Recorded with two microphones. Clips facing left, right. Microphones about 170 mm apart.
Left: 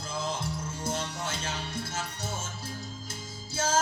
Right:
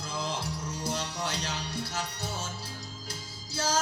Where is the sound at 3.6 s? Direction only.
50° left (ahead or behind).